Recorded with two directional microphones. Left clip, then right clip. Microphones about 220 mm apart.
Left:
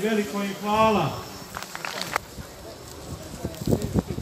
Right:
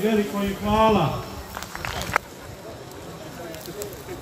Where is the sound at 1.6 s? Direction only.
25° left (ahead or behind).